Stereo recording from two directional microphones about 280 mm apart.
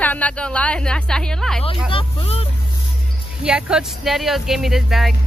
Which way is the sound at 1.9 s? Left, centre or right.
Left.